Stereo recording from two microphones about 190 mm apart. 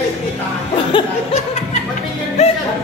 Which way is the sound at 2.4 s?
35° left (ahead or behind).